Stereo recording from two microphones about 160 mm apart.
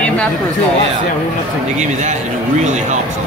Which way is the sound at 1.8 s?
45° right (ahead or behind).